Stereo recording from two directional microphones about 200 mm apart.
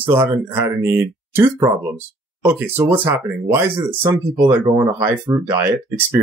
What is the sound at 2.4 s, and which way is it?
Speech, 10° right (ahead or behind).